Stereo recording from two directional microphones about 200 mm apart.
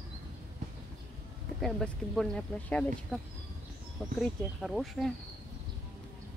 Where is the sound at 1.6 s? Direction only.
Centre (ahead or behind).